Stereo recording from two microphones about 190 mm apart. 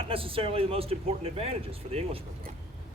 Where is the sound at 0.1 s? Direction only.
30° right (ahead or behind).